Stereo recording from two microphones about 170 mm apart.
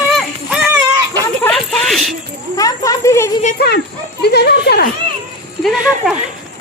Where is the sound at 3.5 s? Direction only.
75° left (ahead or behind).